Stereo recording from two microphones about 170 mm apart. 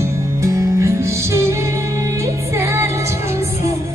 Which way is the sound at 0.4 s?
20° right (ahead or behind).